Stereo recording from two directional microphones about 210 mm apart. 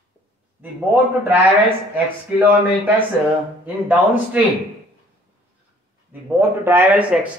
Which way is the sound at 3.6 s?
5° right (ahead or behind).